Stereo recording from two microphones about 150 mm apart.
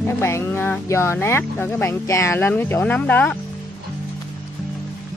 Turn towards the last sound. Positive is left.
turn(degrees=10)  # may be behind; listen again after turning